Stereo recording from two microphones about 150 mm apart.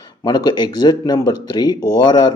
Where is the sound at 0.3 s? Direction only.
25° left (ahead or behind).